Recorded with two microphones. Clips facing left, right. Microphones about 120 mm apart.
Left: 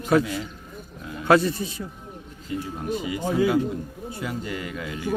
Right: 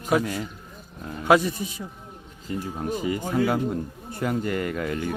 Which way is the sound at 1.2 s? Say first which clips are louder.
Left 1 dB; 15° right (ahead or behind).